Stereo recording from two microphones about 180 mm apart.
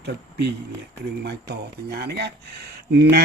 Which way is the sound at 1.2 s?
65° right (ahead or behind).